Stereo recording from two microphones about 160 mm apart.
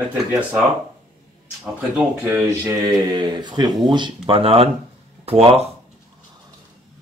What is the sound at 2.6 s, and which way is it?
Speech, 25° right (ahead or behind).